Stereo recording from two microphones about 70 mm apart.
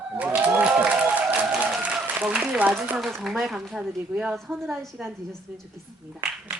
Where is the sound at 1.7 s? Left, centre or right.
Centre.